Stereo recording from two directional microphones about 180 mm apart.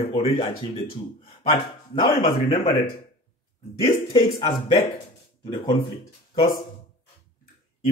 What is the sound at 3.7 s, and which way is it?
Speech, 30° left (ahead or behind).